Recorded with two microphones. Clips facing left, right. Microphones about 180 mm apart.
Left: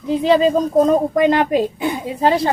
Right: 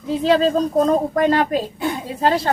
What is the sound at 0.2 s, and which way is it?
Speech, 10° left (ahead or behind).